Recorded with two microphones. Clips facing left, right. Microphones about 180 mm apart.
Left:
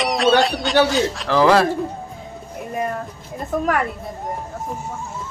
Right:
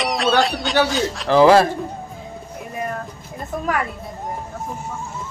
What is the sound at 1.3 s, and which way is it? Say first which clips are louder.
Speech: right 3 dB; 25° right (ahead or behind).